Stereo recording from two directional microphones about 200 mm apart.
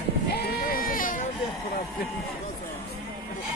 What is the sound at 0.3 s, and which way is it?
Sheep, 50° left (ahead or behind).